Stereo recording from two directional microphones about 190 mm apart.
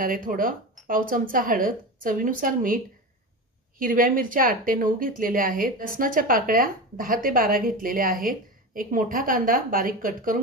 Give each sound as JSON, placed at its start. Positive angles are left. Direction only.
{"t": 0.0, "sound": "a woman's voice", "side_deg": -45}